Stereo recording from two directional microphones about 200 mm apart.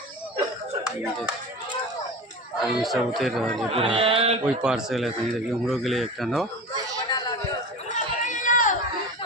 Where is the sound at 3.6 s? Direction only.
30° right (ahead or behind).